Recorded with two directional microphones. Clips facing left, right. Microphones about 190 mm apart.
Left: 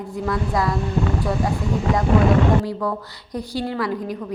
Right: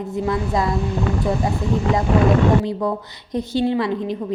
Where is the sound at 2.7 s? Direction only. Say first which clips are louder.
Right 2 dB; 20° right (ahead or behind).